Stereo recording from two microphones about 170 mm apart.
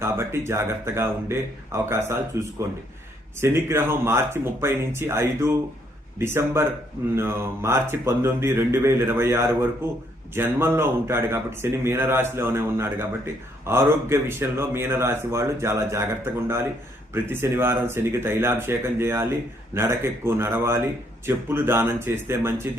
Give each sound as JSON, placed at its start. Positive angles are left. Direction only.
{"t": 0.0, "sound": "speech", "side_deg": -15}